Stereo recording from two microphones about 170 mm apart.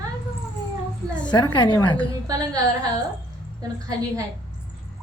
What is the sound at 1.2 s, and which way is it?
Speech, 25° left (ahead or behind).